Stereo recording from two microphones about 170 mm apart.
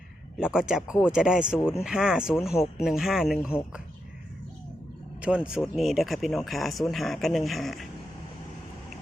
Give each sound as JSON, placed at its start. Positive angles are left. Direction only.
{"t": 0.3, "sound": "speech", "side_deg": -5}
{"t": 5.2, "sound": "speech", "side_deg": -5}